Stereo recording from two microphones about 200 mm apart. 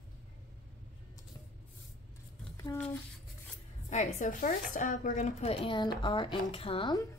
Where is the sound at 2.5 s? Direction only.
10° left (ahead or behind).